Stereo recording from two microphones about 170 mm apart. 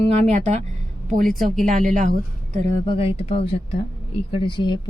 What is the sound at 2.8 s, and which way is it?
Speech, 35° left (ahead or behind).